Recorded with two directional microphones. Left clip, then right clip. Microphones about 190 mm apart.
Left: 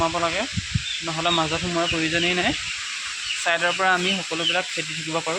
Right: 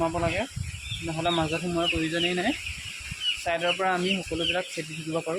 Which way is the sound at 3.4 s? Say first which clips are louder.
Left 7 dB; 5° right (ahead or behind).